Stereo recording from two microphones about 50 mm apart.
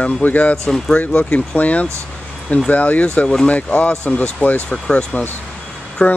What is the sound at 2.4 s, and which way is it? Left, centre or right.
Speech, centre.